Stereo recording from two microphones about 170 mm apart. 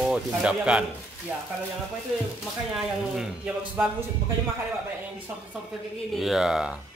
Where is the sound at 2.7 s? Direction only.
5° right (ahead or behind).